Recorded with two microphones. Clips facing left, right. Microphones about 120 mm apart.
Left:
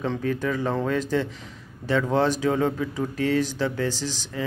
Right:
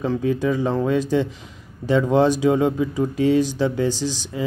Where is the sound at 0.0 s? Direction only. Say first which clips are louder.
Right 5 dB; 10° right (ahead or behind).